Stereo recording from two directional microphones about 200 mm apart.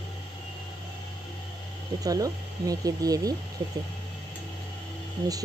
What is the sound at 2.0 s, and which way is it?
Speech, 15° right (ahead or behind).